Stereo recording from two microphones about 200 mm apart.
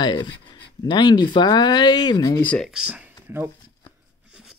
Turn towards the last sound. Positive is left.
turn(degrees=-5)  # may be behind; listen again after turning